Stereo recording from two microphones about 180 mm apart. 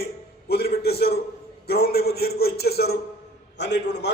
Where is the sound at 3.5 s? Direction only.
75° left (ahead or behind).